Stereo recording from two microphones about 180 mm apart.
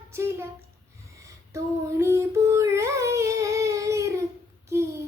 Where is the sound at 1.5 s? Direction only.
15° right (ahead or behind).